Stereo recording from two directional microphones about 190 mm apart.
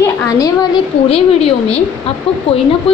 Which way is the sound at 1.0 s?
30° left (ahead or behind).